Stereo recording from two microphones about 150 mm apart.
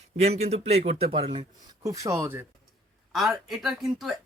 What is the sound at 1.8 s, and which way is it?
Speech, 20° right (ahead or behind).